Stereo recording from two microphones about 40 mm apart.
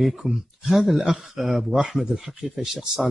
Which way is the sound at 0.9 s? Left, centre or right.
Centre.